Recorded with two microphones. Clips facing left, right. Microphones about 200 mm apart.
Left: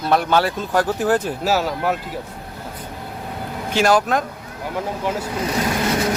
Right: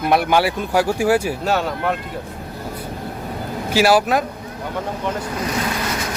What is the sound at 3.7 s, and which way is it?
Speech, 5° right (ahead or behind).